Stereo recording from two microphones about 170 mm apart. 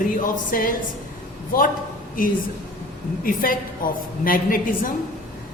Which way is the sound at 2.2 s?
55° left (ahead or behind).